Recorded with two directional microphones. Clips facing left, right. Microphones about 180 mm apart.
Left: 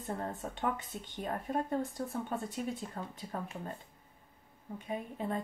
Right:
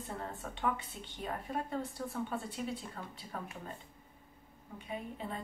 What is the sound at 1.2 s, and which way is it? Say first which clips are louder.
Speech: left 3 dB; 45° left (ahead or behind).